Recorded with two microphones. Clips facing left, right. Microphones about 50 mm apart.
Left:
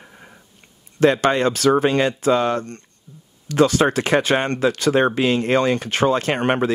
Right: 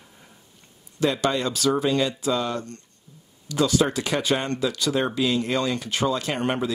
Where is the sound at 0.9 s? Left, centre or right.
Left.